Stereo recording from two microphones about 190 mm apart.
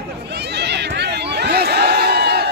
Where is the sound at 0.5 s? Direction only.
60° right (ahead or behind).